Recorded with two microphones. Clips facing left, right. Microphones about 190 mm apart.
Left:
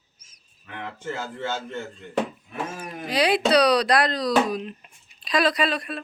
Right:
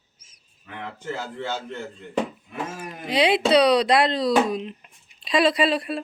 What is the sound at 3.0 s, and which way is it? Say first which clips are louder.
Speech: right 1 dB; 25° right (ahead or behind).